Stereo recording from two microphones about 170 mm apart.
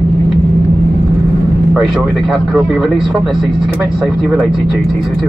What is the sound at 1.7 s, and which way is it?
Speech, 5° right (ahead or behind).